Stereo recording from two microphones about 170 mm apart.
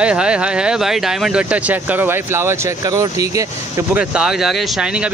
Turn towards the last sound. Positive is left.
turn(degrees=-5)  # may be behind; listen again after turning